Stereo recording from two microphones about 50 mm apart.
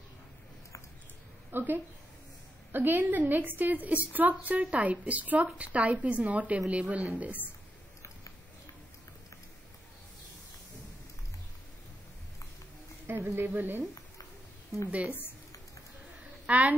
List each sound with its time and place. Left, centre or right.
1.5 s a woman's voice: right
13.0 s a sound: right
13.6 s a woman's voice: right
14.9 s speech: right
16.4 s a woman's voice: right